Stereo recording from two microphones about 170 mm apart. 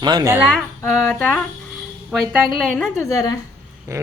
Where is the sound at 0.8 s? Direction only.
10° left (ahead or behind).